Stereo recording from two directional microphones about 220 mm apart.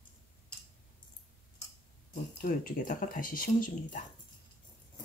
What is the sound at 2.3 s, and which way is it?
Speech, 40° left (ahead or behind).